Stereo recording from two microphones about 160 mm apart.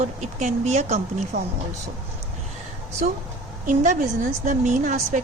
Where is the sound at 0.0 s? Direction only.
45° right (ahead or behind).